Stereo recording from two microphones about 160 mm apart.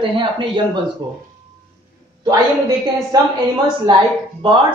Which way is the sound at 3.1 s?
25° right (ahead or behind).